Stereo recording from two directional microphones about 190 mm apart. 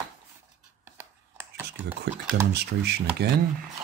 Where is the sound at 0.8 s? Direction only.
10° right (ahead or behind).